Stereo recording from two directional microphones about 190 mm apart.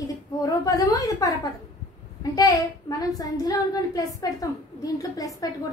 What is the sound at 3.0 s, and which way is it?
A woman's voice, 20° left (ahead or behind).